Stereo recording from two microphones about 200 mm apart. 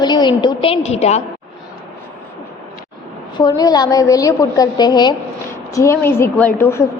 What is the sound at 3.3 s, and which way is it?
A woman's voice, 20° left (ahead or behind).